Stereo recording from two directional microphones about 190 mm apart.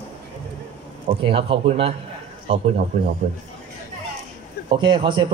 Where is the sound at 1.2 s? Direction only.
30° right (ahead or behind).